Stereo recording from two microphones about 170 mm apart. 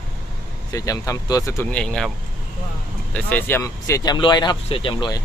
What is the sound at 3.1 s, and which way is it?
Speech, 10° left (ahead or behind).